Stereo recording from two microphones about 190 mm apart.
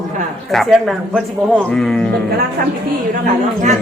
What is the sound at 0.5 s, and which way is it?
Speech, centre (ahead or behind).